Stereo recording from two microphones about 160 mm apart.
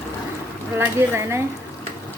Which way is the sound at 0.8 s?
15° right (ahead or behind).